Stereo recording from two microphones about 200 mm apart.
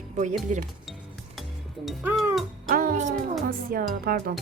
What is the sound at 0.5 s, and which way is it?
Speech, 40° right (ahead or behind).